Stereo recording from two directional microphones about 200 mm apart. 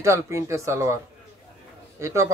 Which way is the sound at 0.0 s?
15° right (ahead or behind).